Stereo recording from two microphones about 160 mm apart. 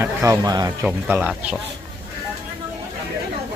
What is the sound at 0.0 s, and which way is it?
Speech, 20° right (ahead or behind).